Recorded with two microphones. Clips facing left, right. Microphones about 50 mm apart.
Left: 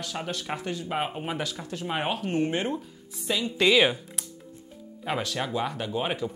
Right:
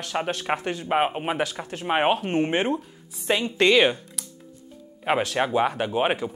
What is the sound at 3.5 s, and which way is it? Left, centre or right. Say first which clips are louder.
Speech: right 2 dB; centre.